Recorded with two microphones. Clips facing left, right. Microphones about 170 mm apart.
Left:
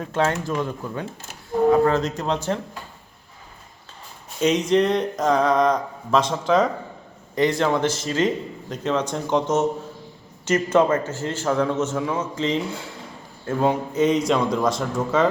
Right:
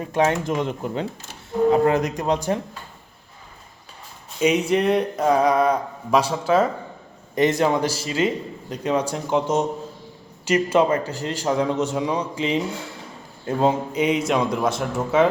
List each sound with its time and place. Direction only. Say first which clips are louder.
0.0 s speech: right 2 dB; 15° right (ahead or behind)
4.4 s speech: left 1 dB; 10° right (ahead or behind)